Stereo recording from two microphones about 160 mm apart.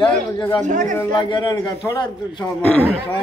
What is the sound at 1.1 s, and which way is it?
Speech, 30° left (ahead or behind).